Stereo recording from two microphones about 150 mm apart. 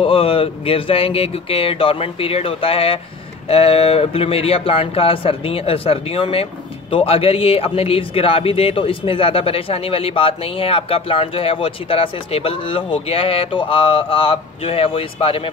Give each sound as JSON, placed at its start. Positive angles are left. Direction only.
{"t": 0.0, "sound": "speech", "side_deg": 35}